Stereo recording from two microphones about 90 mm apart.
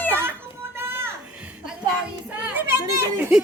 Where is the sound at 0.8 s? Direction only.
25° right (ahead or behind).